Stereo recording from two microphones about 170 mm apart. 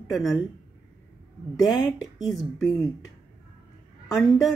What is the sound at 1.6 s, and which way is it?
Speech, centre (ahead or behind).